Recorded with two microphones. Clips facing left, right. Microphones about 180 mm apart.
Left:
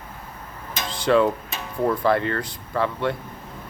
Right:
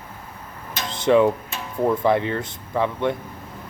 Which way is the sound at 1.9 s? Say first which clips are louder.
Right 1 dB; 15° right (ahead or behind).